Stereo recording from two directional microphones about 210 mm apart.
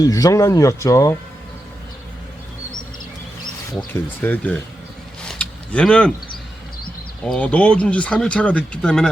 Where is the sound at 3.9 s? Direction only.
10° left (ahead or behind).